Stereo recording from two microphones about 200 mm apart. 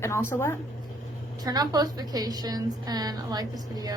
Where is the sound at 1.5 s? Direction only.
20° right (ahead or behind).